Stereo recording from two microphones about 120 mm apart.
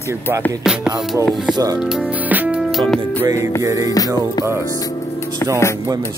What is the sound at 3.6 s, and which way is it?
Speech, 30° right (ahead or behind).